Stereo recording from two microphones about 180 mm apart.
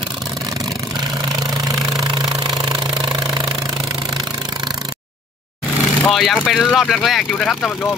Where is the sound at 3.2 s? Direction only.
25° right (ahead or behind).